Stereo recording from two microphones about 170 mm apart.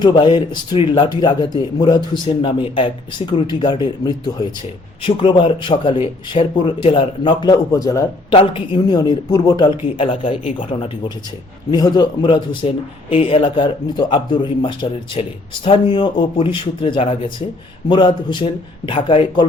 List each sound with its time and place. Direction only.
0.0 s speech: 25° left (ahead or behind)
8.3 s speech: 30° left (ahead or behind)